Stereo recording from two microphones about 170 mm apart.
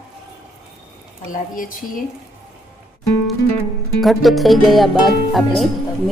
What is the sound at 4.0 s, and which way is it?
Music, centre (ahead or behind).